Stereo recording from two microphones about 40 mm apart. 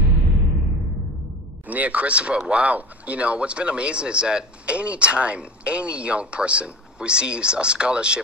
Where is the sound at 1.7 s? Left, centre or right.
Right.